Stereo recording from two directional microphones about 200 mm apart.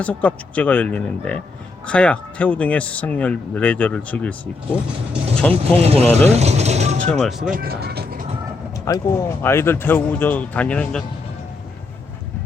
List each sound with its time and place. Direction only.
0.0 s speech: 5° left (ahead or behind)
5.8 s speech: 30° right (ahead or behind)
6.3 s mechanisms: 35° right (ahead or behind)
7.1 s speech: centre (ahead or behind)
7.5 s speech: 50° right (ahead or behind)
8.8 s speech: 15° left (ahead or behind)